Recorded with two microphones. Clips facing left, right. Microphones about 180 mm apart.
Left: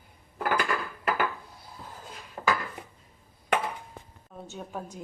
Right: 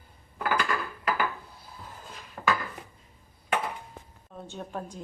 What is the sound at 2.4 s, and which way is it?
Dishes, 15° left (ahead or behind).